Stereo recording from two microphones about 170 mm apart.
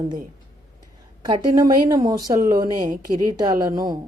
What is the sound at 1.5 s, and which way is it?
A woman's voice, 20° right (ahead or behind).